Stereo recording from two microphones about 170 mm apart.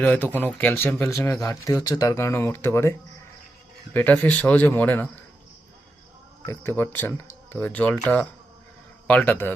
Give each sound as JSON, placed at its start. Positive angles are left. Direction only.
{"t": 0.0, "sound": "speech", "side_deg": 10}
{"t": 3.9, "sound": "speech", "side_deg": 10}
{"t": 6.4, "sound": "speech", "side_deg": 15}